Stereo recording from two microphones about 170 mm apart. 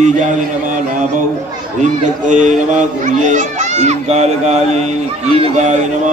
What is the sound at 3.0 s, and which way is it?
Speech, 45° right (ahead or behind).